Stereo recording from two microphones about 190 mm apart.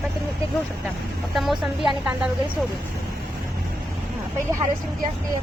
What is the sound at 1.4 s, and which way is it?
Speech, centre (ahead or behind).